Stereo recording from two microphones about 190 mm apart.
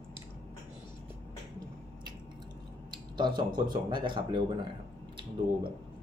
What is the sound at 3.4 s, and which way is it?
Speech, 25° right (ahead or behind).